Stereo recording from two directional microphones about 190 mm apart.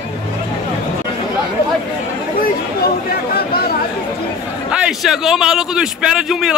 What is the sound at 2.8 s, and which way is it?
Chatter, 55° left (ahead or behind).